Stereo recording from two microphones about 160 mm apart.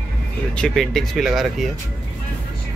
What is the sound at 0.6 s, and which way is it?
Speech, centre (ahead or behind).